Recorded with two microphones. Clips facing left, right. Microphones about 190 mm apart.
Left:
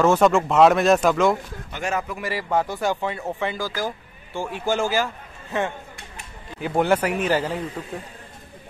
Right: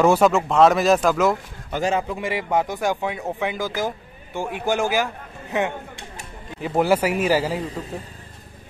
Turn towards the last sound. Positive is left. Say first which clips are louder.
# right 2 dB
turn(degrees=-10)  # may be behind; listen again after turning